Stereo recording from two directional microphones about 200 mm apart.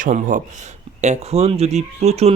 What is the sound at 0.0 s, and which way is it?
Speech, 40° right (ahead or behind).